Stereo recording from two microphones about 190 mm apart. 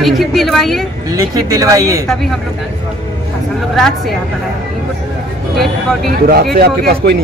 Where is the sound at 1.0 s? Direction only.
20° right (ahead or behind).